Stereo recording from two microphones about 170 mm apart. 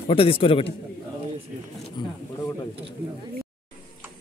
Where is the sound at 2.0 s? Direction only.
25° left (ahead or behind).